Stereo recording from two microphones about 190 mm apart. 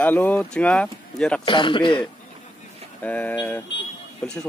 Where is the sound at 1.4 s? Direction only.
25° left (ahead or behind).